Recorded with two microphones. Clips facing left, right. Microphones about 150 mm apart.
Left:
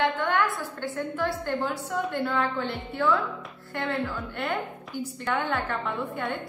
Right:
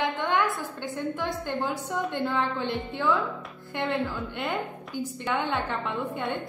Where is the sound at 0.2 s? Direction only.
15° right (ahead or behind).